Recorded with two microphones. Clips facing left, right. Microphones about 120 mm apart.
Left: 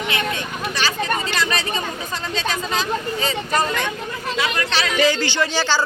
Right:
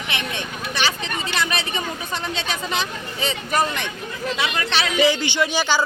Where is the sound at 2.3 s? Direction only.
20° right (ahead or behind).